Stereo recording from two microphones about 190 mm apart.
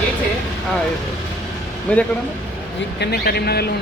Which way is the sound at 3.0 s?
55° left (ahead or behind).